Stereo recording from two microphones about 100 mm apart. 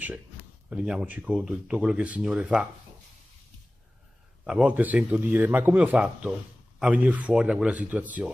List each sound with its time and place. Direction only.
0.7 s speech: 5° right (ahead or behind)
4.5 s speech: 10° right (ahead or behind)